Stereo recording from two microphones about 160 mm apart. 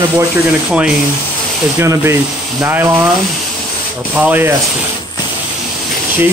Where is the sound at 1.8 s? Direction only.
15° right (ahead or behind).